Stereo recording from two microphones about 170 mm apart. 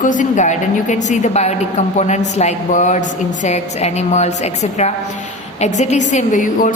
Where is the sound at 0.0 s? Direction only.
50° left (ahead or behind).